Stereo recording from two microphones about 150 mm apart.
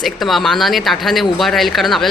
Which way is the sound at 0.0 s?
Centre (ahead or behind).